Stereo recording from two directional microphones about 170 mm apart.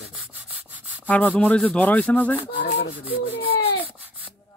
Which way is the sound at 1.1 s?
10° left (ahead or behind).